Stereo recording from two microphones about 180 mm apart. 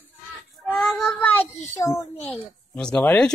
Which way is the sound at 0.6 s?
Centre (ahead or behind).